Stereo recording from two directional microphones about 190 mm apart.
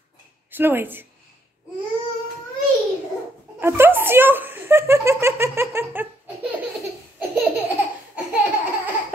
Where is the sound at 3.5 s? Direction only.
10° right (ahead or behind).